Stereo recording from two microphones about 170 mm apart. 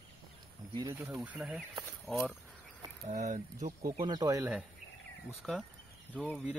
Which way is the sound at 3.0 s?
45° right (ahead or behind).